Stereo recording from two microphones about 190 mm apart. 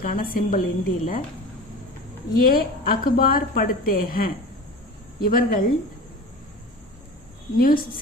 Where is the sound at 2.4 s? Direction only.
50° left (ahead or behind).